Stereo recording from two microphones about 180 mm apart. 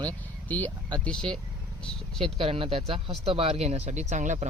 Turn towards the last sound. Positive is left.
turn(degrees=-40)  # may be behind; listen again after turning